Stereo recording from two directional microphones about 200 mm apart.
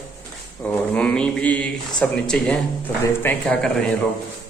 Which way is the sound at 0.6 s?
10° left (ahead or behind).